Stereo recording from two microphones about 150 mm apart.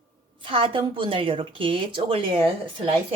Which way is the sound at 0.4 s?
35° right (ahead or behind).